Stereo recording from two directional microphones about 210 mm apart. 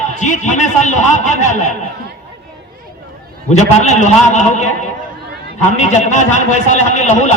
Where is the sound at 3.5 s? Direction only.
35° left (ahead or behind).